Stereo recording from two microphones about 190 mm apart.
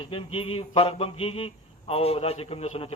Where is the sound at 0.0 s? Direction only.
30° left (ahead or behind).